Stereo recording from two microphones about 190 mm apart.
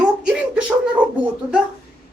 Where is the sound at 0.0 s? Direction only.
5° right (ahead or behind).